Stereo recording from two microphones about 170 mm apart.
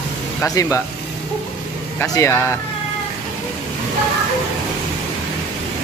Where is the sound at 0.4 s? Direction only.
20° left (ahead or behind).